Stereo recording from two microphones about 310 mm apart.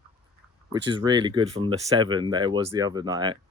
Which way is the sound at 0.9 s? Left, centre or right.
Centre.